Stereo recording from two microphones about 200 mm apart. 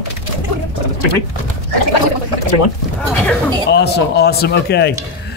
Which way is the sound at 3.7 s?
55° left (ahead or behind).